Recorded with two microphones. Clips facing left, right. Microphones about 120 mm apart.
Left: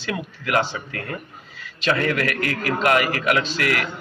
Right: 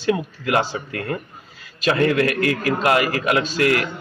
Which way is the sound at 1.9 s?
25° right (ahead or behind).